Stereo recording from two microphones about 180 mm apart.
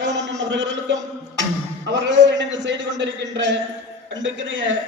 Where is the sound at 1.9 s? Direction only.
80° right.